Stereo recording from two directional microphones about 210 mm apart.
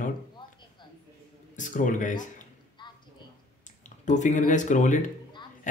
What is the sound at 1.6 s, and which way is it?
Speech, 35° left (ahead or behind).